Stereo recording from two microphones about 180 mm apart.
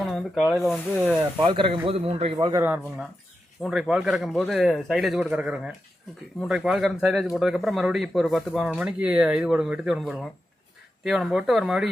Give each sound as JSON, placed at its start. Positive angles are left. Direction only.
{"t": 0.0, "sound": "snake", "side_deg": 0}
{"t": 0.5, "sound": "speech", "side_deg": 0}
{"t": 1.4, "sound": "speech", "side_deg": -30}
{"t": 2.5, "sound": "speech", "side_deg": -10}